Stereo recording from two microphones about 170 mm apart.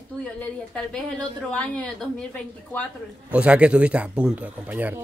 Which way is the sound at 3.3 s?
5° right (ahead or behind).